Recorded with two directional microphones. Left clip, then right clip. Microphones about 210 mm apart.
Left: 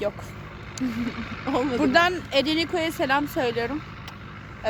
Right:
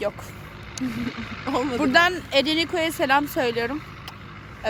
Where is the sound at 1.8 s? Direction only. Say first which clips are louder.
Right 2 dB; 15° right (ahead or behind).